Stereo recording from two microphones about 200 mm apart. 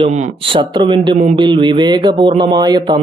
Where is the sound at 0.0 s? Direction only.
30° right (ahead or behind).